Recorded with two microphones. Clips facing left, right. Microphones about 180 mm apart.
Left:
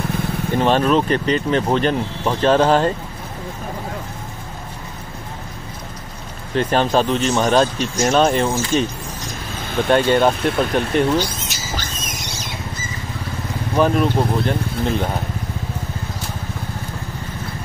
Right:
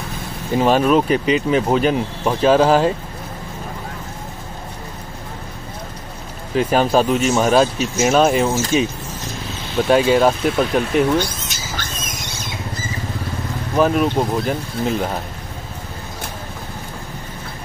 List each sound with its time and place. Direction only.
0.5 s speech: 5° right (ahead or behind)
6.5 s speech: 5° right (ahead or behind)
9.8 s speech: 5° right (ahead or behind)
13.7 s speech: 5° right (ahead or behind)